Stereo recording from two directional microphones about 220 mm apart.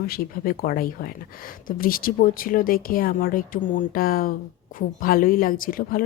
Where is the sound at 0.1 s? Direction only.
40° left (ahead or behind).